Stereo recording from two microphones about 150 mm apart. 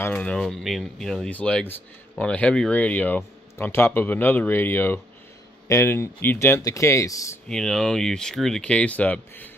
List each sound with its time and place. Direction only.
0.0 s speech: 10° left (ahead or behind)
7.4 s speech: 5° left (ahead or behind)